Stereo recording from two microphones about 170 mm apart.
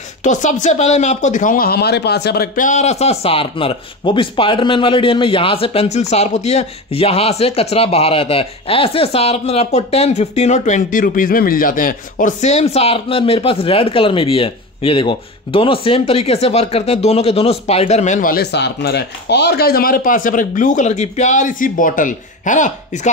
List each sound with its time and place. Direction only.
0.2 s speech: 45° left (ahead or behind)